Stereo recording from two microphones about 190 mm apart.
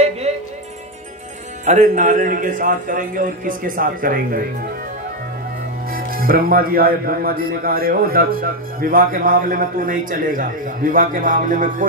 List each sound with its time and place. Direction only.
1.6 s speech: 40° right (ahead or behind)
5.9 s speech: 50° right (ahead or behind)